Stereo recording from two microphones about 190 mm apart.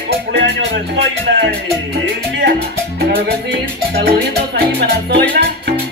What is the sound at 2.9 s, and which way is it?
Music, 55° right (ahead or behind).